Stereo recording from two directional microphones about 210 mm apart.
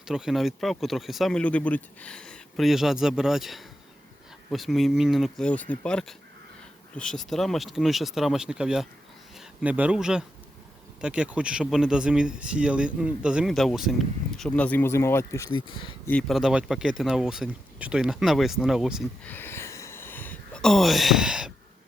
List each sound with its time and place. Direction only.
0.0 s speech: 5° right (ahead or behind); by 15.4 s 15° left (ahead or behind)
15.5 s speech: 25° left (ahead or behind)
16.0 s speech: 5° left (ahead or behind)
19.3 s a sound: 10° left (ahead or behind)